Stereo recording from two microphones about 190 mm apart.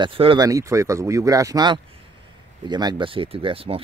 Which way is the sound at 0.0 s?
25° right (ahead or behind).